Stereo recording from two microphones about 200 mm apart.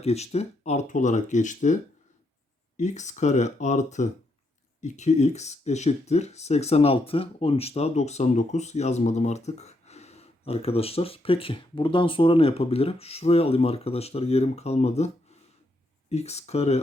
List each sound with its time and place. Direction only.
0.0 s speech: 30° left (ahead or behind)